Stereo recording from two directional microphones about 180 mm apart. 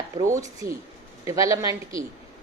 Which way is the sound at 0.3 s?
20° right (ahead or behind).